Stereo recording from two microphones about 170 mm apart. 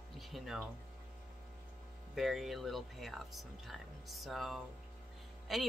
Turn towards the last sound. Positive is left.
turn(degrees=0)  # may be behind; listen again after turning